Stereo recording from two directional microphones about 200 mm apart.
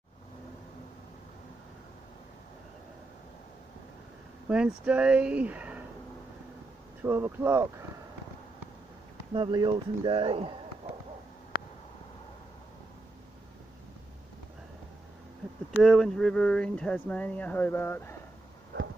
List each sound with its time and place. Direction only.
4.5 s speech: 5° right (ahead or behind)
7.0 s speech: 10° right (ahead or behind)
9.3 s speech: 25° right (ahead or behind)
15.7 s speech: centre (ahead or behind)